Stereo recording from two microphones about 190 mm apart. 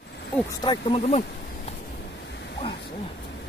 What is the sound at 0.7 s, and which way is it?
Speech, 30° left (ahead or behind).